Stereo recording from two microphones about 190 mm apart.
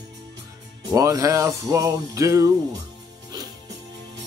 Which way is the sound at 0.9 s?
20° right (ahead or behind).